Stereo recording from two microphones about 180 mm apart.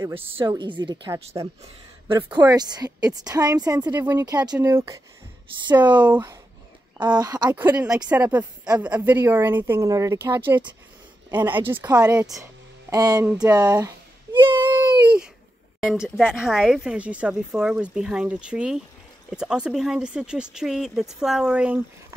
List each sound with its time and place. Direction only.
0.2 s a woman's voice: 30° right (ahead or behind)
2.3 s a woman's voice: 20° right (ahead or behind)
3.8 s a woman's voice: 10° right (ahead or behind)
6.0 s a woman's voice: 10° right (ahead or behind)
7.0 s a woman's voice: 25° right (ahead or behind)
8.1 s a woman's voice: 10° right (ahead or behind)
13.6 s a sound: 20° right (ahead or behind)
14.6 s baby cry: 10° right (ahead or behind)
15.9 s speech: centre (ahead or behind)